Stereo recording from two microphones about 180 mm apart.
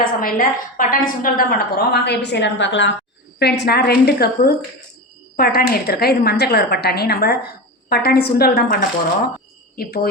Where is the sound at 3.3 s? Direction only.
65° left (ahead or behind).